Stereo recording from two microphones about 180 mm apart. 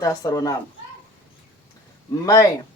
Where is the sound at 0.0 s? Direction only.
20° left (ahead or behind).